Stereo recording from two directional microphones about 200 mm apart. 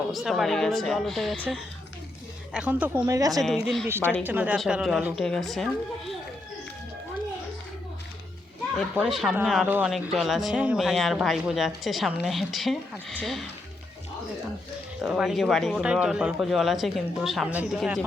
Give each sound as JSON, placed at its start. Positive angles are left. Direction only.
{"t": 0.1, "sound": "speech", "side_deg": 0}
{"t": 2.5, "sound": "speech", "side_deg": -5}
{"t": 3.4, "sound": "speech", "side_deg": 0}
{"t": 3.8, "sound": "speech", "side_deg": -10}
{"t": 8.7, "sound": "speech", "side_deg": 0}
{"t": 15.0, "sound": "speech", "side_deg": 0}